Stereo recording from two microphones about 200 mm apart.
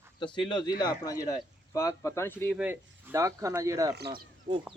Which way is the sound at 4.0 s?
55° right (ahead or behind).